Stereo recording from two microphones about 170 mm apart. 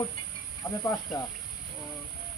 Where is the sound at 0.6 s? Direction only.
15° left (ahead or behind).